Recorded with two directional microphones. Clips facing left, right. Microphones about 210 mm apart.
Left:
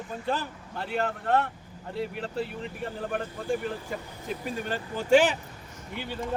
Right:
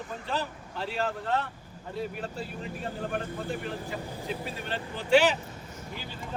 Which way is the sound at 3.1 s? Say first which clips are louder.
Left 6 dB; 45° left (ahead or behind).